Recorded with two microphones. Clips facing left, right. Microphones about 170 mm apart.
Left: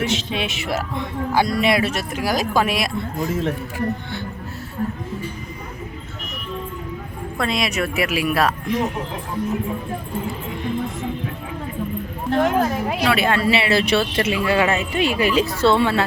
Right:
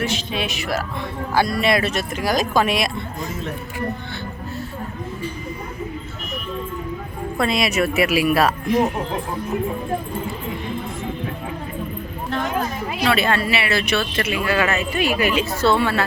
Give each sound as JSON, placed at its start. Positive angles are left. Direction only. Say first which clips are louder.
{"t": 0.0, "sound": "speech", "louder": "left 1 dB", "side_deg": 20}
{"t": 7.3, "sound": "speech", "louder": "right 2 dB", "side_deg": -5}
{"t": 12.4, "sound": "speech", "louder": "left 6 dB", "side_deg": 65}
{"t": 13.1, "sound": "speech", "louder": "right 1 dB", "side_deg": 10}
{"t": 13.4, "sound": "speech", "louder": "left 4 dB", "side_deg": 25}